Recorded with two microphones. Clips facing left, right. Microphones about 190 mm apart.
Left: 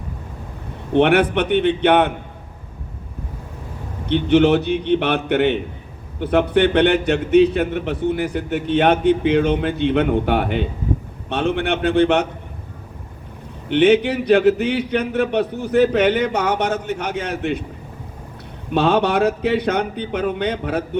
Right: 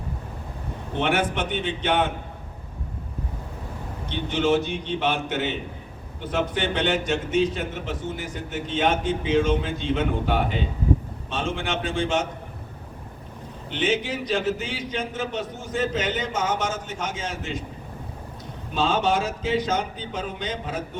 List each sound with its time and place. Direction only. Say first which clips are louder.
0.9 s a man's voice: left 9 dB; 65° left (ahead or behind)
4.0 s a man's voice: left 10 dB; 65° left (ahead or behind)
13.7 s a man's voice: left 11 dB; 65° left (ahead or behind)
18.7 s a man's voice: left 6 dB; 65° left (ahead or behind)